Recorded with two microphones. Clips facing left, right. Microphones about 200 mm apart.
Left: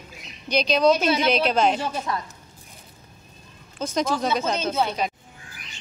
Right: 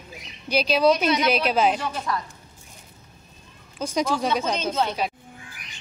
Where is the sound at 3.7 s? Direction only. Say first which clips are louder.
Even; 10° right (ahead or behind).